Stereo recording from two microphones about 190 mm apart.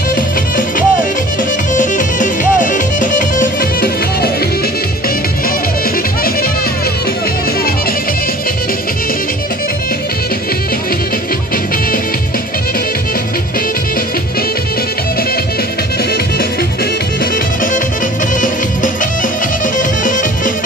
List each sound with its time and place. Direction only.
0.1 s music: 45° left (ahead or behind)